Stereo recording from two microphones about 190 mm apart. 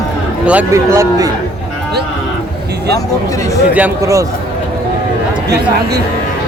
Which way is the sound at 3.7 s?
15° right (ahead or behind).